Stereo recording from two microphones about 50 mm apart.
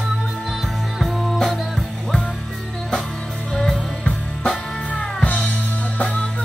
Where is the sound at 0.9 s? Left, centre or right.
Centre.